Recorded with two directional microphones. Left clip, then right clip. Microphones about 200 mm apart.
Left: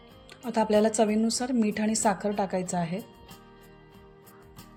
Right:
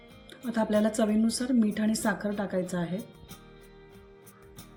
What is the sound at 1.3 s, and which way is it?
A woman's voice, 40° left (ahead or behind).